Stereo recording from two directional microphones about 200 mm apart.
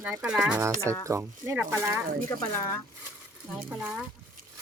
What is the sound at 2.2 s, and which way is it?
Speech, 15° left (ahead or behind).